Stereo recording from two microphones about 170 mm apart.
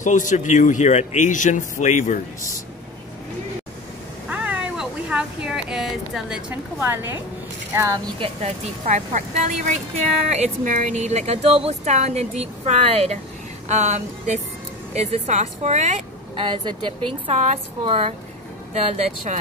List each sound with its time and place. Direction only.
0.0 s speech: 45° left (ahead or behind)
4.3 s cat: 10° right (ahead or behind)
7.7 s speech: 15° right (ahead or behind)
8.2 s speech: 40° right (ahead or behind)
16.3 s speech: 30° right (ahead or behind)